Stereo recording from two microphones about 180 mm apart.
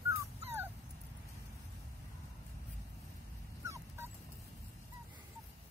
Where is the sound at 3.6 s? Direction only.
15° right (ahead or behind).